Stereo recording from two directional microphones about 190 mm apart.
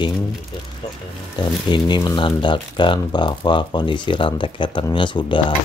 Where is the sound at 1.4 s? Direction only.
25° left (ahead or behind).